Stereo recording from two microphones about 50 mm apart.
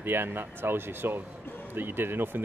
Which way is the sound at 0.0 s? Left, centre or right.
Right.